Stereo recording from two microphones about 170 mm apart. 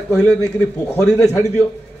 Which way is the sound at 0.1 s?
5° left (ahead or behind).